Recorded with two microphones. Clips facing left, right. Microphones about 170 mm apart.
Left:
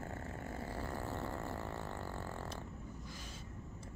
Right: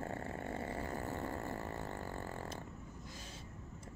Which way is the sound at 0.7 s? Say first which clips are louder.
Right 1 dB; 15° right (ahead or behind).